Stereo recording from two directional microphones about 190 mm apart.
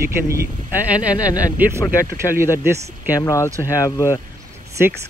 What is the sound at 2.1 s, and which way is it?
Speech, 15° right (ahead or behind).